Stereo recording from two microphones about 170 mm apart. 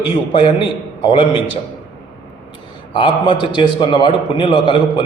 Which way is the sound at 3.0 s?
30° left (ahead or behind).